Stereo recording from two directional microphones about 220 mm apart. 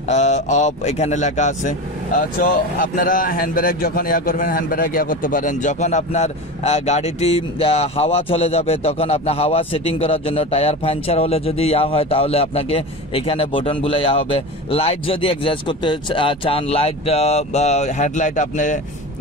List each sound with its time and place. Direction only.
0.1 s speech: 30° left (ahead or behind)